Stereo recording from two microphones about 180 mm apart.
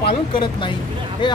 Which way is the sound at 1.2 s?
25° left (ahead or behind).